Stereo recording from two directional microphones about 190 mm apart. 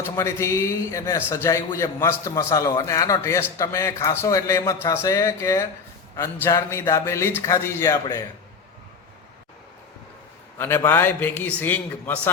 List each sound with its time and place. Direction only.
0.0 s a man's voice: 15° left (ahead or behind)
10.6 s a man's voice: 10° left (ahead or behind)